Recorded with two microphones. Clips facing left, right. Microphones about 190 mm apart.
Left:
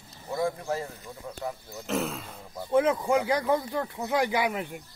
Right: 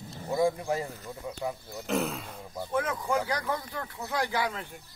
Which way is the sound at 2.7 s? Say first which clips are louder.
Left 6 dB; 20° left (ahead or behind).